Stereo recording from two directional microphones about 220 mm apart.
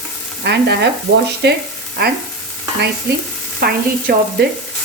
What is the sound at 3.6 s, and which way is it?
Speech, 45° right (ahead or behind).